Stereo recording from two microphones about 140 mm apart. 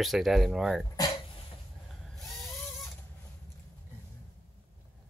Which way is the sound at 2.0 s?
Centre (ahead or behind).